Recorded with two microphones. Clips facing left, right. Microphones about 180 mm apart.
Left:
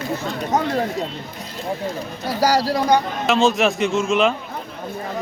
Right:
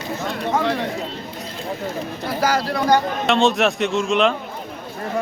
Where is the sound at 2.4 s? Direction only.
35° left (ahead or behind).